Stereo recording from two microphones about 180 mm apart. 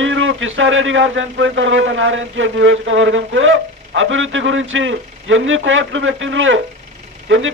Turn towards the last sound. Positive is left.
turn(degrees=-90)